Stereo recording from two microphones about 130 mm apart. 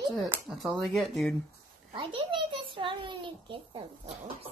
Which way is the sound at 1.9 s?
40° right (ahead or behind).